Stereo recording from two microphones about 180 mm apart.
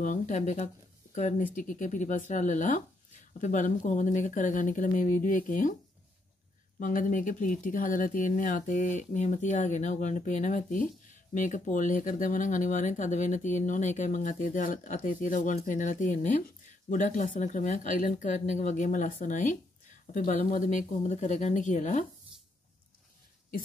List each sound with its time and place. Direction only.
0.0 s speech: 45° left (ahead or behind)
6.8 s speech: 45° left (ahead or behind)